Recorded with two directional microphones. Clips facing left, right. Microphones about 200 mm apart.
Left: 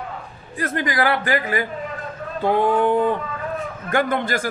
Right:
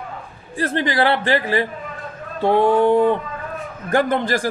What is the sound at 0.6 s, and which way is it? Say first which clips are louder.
A man's voice: right 3 dB; 30° right (ahead or behind).